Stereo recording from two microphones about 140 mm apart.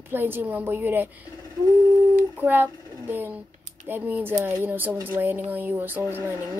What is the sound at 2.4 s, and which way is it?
Speech, 15° right (ahead or behind).